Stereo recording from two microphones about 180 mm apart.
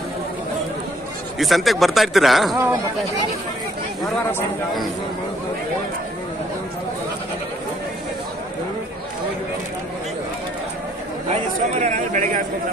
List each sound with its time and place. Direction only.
1.4 s speech: centre (ahead or behind)
2.5 s speech: 15° right (ahead or behind)
11.8 s speech: 45° right (ahead or behind)